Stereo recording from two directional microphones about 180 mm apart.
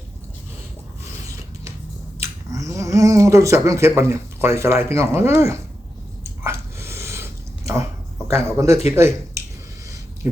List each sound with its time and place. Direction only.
2.5 s speech: 15° right (ahead or behind)
6.2 s a sound: 15° right (ahead or behind)
8.3 s speech: 15° right (ahead or behind)